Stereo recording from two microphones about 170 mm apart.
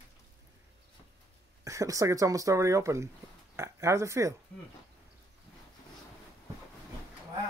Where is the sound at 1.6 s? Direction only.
20° right (ahead or behind).